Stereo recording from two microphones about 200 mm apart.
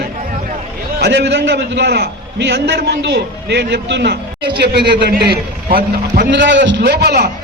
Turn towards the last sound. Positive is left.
turn(degrees=-55)  # may be behind; listen again after turning